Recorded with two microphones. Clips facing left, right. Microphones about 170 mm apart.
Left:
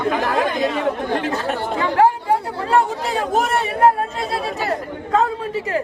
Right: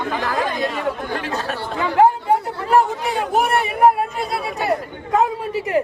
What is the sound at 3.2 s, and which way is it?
Speech, 10° right (ahead or behind).